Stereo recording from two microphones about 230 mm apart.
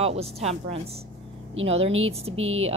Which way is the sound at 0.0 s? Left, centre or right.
Right.